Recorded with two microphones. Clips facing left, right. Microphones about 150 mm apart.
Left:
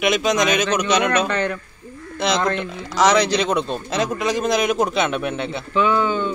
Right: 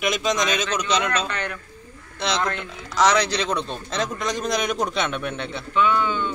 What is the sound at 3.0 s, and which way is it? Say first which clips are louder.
Speech: left 3 dB; 10° left (ahead or behind).